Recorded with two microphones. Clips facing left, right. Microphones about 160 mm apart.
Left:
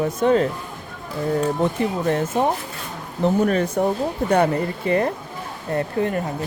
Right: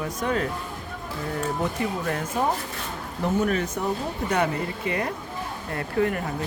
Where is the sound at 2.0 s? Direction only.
30° left (ahead or behind).